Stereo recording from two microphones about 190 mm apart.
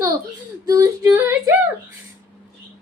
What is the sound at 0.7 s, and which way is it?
Female singing, 15° right (ahead or behind).